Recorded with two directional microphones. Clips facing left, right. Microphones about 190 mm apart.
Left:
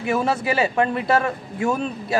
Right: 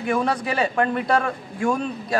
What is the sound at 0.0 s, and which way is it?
A man's voice, 5° left (ahead or behind).